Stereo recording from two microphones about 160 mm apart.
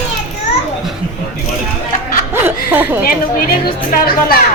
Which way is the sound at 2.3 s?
10° right (ahead or behind).